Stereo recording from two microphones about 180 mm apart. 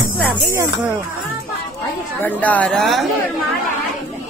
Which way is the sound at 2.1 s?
10° left (ahead or behind).